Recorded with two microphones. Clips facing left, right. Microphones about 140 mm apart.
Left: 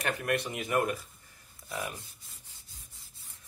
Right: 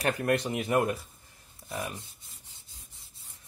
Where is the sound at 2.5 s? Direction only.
20° right (ahead or behind).